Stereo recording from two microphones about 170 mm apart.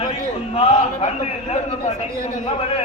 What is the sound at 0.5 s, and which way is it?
Speech, 35° left (ahead or behind).